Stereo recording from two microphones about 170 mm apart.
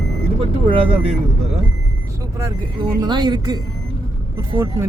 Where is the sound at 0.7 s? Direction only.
30° right (ahead or behind).